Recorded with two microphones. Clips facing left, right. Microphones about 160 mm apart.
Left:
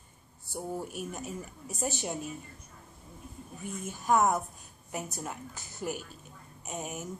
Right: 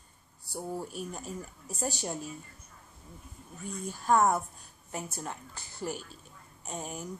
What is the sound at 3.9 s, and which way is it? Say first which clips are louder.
Speech: right 1 dB; 10° left (ahead or behind).